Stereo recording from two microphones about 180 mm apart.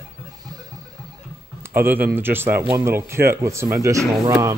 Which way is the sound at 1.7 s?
10° right (ahead or behind).